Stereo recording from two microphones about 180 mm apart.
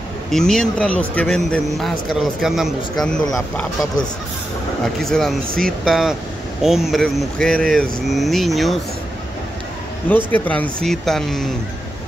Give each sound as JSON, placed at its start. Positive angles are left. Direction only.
{"t": 0.3, "sound": "a man's voice", "side_deg": 5}
{"t": 4.9, "sound": "a man's voice", "side_deg": 0}
{"t": 5.5, "sound": "speech", "side_deg": -55}
{"t": 5.9, "sound": "a man's voice", "side_deg": 0}
{"t": 10.0, "sound": "a man's voice", "side_deg": 10}